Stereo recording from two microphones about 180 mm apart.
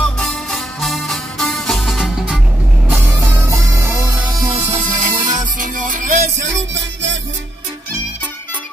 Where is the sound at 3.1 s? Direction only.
15° right (ahead or behind).